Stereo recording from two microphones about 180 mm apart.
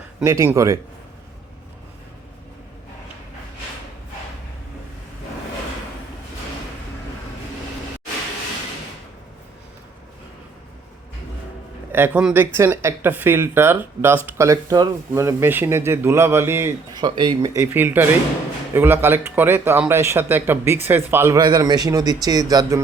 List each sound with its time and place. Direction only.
0.3 s a man's voice: 15° right (ahead or behind)
11.9 s a man's voice: 10° right (ahead or behind)